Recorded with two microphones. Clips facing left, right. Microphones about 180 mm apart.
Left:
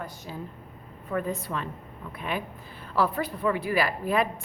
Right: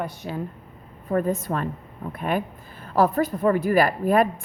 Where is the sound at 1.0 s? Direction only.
45° right (ahead or behind).